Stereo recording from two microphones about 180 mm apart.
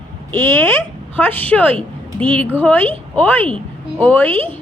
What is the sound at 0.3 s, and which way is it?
A woman's voice, 15° left (ahead or behind).